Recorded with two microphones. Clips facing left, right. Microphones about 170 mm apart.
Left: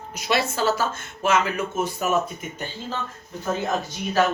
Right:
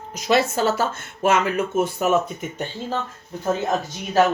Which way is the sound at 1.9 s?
65° right (ahead or behind).